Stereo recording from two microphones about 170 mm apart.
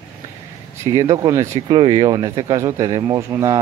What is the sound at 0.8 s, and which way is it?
Speech, 20° right (ahead or behind).